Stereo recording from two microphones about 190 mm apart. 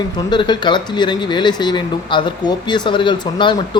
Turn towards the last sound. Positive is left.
turn(degrees=25)  # may be behind; listen again after turning